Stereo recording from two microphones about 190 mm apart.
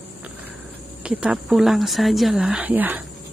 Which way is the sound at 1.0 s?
5° right (ahead or behind).